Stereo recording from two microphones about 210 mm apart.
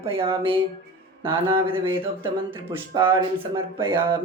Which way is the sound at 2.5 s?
10° right (ahead or behind).